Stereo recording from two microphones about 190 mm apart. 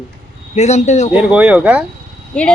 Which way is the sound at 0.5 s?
35° left (ahead or behind).